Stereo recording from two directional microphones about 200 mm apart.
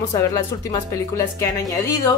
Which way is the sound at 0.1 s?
20° left (ahead or behind).